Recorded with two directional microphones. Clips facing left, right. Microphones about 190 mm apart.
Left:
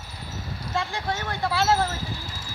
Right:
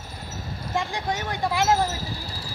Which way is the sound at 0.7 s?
15° right (ahead or behind).